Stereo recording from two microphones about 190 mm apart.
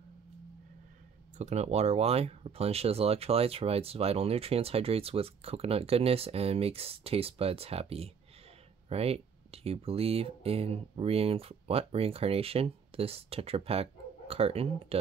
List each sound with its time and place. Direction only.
1.4 s speech: 35° right (ahead or behind)